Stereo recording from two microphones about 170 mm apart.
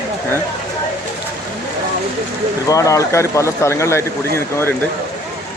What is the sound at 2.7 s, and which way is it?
Speech, 20° left (ahead or behind).